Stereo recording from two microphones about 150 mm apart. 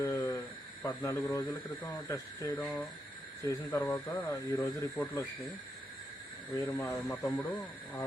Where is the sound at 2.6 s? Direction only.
5° left (ahead or behind).